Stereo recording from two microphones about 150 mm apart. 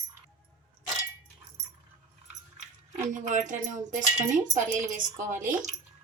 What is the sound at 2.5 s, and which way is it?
Speech, 55° right (ahead or behind).